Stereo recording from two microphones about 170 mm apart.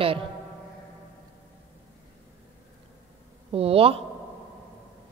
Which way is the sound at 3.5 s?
35° right (ahead or behind).